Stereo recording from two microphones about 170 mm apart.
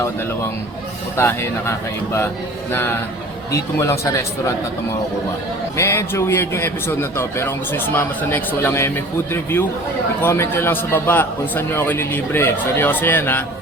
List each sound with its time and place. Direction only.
1.1 s a man's voice: 15° left (ahead or behind)
2.7 s a man's voice: 15° left (ahead or behind)
5.7 s a man's voice: 15° left (ahead or behind)